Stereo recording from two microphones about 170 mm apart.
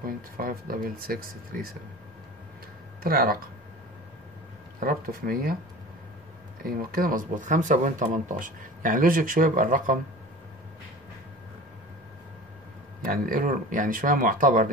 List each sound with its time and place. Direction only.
0.0 s speech: 55° right (ahead or behind)
3.0 s speech: 60° right (ahead or behind)
4.7 s speech: 60° right (ahead or behind)
6.6 s speech: 60° right (ahead or behind)
13.0 s speech: 55° right (ahead or behind)